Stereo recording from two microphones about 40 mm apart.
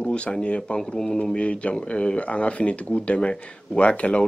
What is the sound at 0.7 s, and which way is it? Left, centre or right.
Speech, centre.